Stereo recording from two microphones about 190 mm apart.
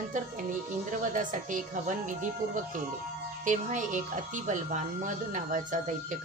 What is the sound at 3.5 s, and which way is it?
A woman's voice, 40° right (ahead or behind).